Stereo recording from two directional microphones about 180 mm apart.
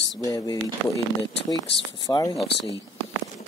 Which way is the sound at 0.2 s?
20° left (ahead or behind).